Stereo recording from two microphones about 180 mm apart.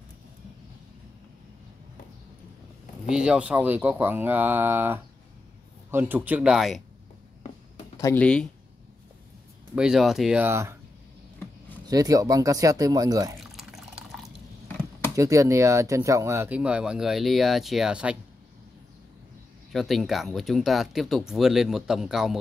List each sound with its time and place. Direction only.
3.1 s speech: 5° right (ahead or behind)
8.0 s speech: 10° left (ahead or behind)
9.8 s speech: centre (ahead or behind)
11.9 s speech: 20° right (ahead or behind)
13.4 s water: centre (ahead or behind)
15.1 s speech: 15° right (ahead or behind)
19.7 s speech: centre (ahead or behind)